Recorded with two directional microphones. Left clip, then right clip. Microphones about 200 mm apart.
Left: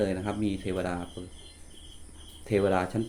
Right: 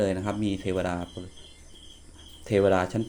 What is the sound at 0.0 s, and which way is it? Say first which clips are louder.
Speech: right 2 dB; 30° right (ahead or behind).